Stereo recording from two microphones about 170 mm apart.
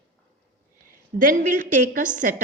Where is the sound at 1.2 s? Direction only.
50° right (ahead or behind).